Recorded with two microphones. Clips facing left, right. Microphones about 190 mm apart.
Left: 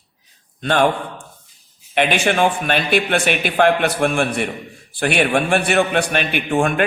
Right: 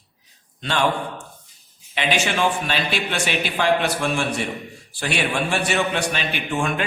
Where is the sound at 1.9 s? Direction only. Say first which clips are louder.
Left 5 dB; 55° left (ahead or behind).